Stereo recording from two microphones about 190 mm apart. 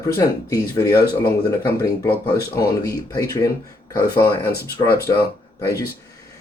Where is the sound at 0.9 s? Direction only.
55° left (ahead or behind).